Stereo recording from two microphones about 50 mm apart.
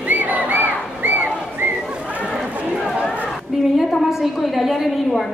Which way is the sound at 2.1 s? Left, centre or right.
Right.